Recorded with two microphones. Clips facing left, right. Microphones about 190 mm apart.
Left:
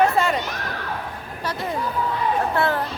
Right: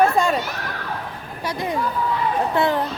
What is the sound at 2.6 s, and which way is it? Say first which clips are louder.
Speech: right 3 dB; 15° right (ahead or behind).